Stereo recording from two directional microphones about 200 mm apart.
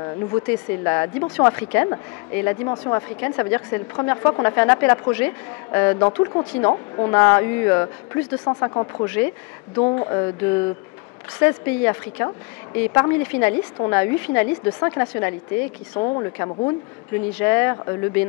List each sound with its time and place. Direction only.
0.0 s a woman's voice: 15° left (ahead or behind)